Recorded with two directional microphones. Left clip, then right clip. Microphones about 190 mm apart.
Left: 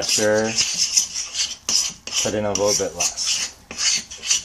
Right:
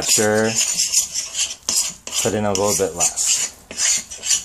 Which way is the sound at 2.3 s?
40° right (ahead or behind).